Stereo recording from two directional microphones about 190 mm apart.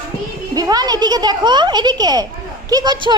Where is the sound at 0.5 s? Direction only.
20° right (ahead or behind).